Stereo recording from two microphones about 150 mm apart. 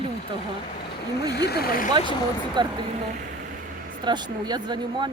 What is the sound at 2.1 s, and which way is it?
Speech, 30° right (ahead or behind).